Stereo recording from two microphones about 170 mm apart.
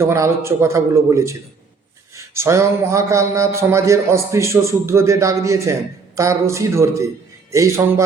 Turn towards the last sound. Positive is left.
turn(degrees=-15)  # may be behind; listen again after turning